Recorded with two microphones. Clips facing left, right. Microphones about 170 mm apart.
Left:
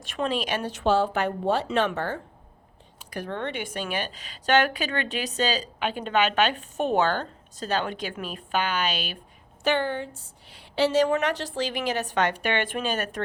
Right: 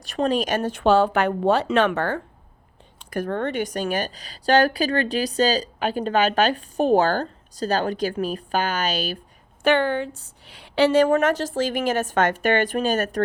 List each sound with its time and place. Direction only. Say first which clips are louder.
0.0 s speech: right 5 dB; 40° right (ahead or behind); by 2.2 s 65° right (ahead or behind)
3.1 s a woman's voice: right 6 dB; 45° right (ahead or behind)
9.6 s a woman's voice: right 5 dB; 70° right (ahead or behind); by 13.2 s 40° right (ahead or behind)